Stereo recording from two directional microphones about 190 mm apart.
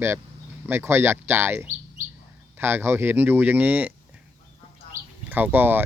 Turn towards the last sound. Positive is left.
turn(degrees=-10)  # may be behind; listen again after turning